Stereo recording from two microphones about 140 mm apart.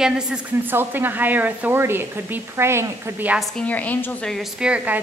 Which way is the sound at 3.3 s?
5° left (ahead or behind).